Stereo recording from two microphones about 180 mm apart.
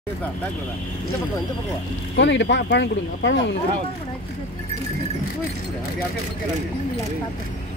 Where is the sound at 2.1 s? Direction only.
80° left.